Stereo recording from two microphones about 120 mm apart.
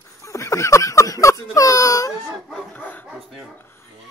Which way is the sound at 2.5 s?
10° left (ahead or behind).